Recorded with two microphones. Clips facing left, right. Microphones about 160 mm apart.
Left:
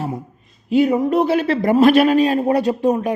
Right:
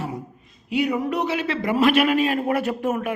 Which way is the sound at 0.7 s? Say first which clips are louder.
Left 7 dB; 40° left (ahead or behind).